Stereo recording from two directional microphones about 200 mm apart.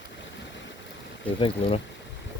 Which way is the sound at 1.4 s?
30° left (ahead or behind).